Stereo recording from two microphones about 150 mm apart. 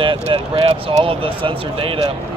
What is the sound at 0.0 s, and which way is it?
Speech, 35° right (ahead or behind).